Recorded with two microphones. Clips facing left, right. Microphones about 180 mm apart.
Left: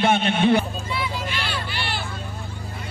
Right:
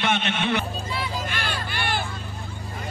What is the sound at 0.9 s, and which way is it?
Vehicle, 50° right (ahead or behind).